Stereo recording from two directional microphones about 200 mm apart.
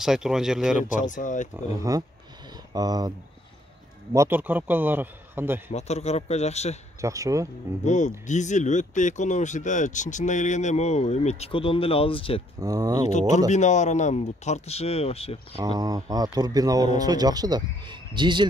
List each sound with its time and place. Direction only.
0.0 s speech: centre (ahead or behind)
0.8 s speech: 40° left (ahead or behind)
1.8 s a man's voice: 20° right (ahead or behind)
4.1 s a man's voice: 10° right (ahead or behind)
5.7 s speech: 35° left (ahead or behind)
7.0 s a man's voice: 15° right (ahead or behind)
7.8 s speech: 35° left (ahead or behind)
12.5 s a man's voice: 20° right (ahead or behind)
13.5 s speech: 35° left (ahead or behind)
15.5 s a man's voice: 20° right (ahead or behind)